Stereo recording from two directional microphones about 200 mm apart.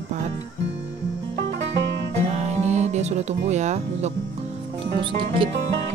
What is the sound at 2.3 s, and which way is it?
Music, 35° right (ahead or behind).